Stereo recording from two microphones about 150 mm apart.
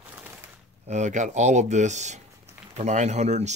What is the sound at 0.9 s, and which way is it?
Speech, 50° right (ahead or behind).